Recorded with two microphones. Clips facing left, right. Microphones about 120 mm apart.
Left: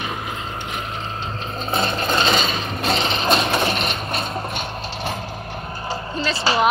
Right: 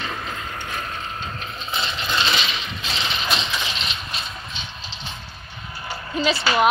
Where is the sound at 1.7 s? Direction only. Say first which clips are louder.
Left 6 dB; 50° left (ahead or behind).